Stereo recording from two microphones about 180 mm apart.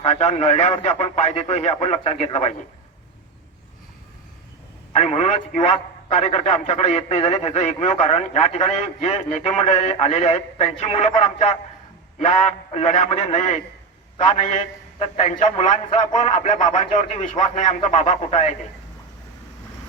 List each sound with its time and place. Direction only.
0.0 s a man's voice: 35° left (ahead or behind)
4.9 s a man's voice: 35° left (ahead or behind)